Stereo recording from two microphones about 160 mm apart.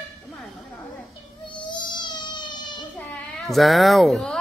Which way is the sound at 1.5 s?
30° left (ahead or behind).